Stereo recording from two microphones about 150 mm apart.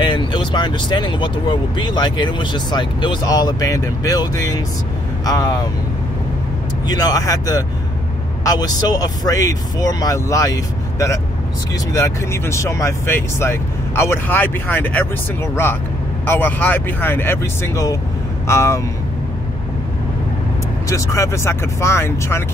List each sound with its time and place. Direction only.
0.0 s speech: 30° left (ahead or behind)
6.9 s a man's voice: 25° left (ahead or behind)
20.9 s a man's voice: 20° left (ahead or behind)